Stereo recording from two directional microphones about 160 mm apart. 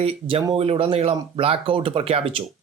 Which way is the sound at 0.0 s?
35° right (ahead or behind).